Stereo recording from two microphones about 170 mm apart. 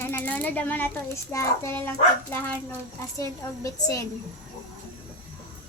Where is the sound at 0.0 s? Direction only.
10° left (ahead or behind).